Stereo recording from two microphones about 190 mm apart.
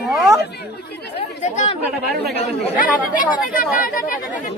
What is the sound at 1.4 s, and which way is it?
Speech, 35° left (ahead or behind).